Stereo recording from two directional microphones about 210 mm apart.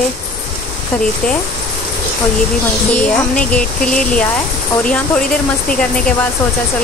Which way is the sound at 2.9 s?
5° left (ahead or behind).